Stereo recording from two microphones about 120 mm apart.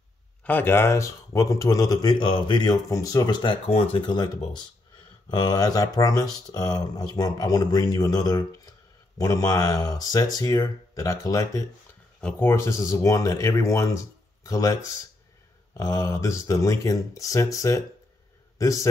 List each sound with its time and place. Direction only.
0.4 s speech: 15° left (ahead or behind); by 3.5 s 40° left (ahead or behind)
3.6 s speech: 50° left (ahead or behind)
5.3 s speech: 35° left (ahead or behind)
12.2 s speech: 10° left (ahead or behind); by 18.9 s 25° left (ahead or behind)